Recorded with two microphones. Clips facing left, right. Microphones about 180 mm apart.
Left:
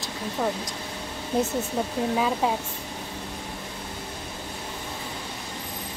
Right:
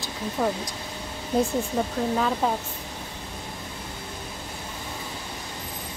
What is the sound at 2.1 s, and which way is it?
Speech, 10° left (ahead or behind).